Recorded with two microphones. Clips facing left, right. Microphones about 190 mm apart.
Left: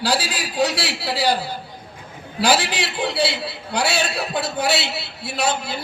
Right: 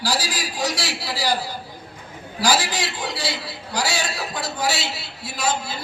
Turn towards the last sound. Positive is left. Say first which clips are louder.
# left 2 dB
turn(degrees=60)  # may be behind; listen again after turning